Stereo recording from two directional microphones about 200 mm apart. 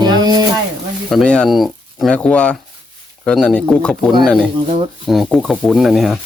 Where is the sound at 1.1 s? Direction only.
5° left (ahead or behind).